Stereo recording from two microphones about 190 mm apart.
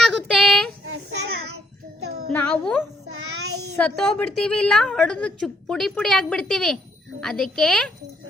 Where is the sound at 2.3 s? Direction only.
5° left (ahead or behind).